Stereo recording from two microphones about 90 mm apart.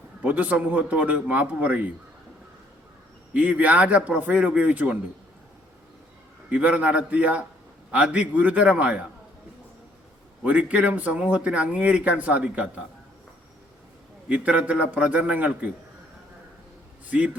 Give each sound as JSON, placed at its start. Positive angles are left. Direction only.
{"t": 0.2, "sound": "speech", "side_deg": -15}
{"t": 3.3, "sound": "speech", "side_deg": -20}
{"t": 6.5, "sound": "speech", "side_deg": -15}
{"t": 10.4, "sound": "speech", "side_deg": -15}
{"t": 14.3, "sound": "speech", "side_deg": -15}
{"t": 17.1, "sound": "speech", "side_deg": -15}